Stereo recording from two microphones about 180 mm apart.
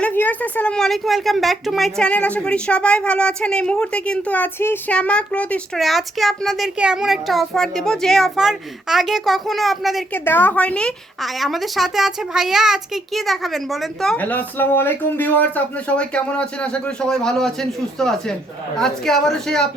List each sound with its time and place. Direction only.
0.0 s a woman's voice: 10° left (ahead or behind)
10.1 s a woman's voice: 10° left (ahead or behind)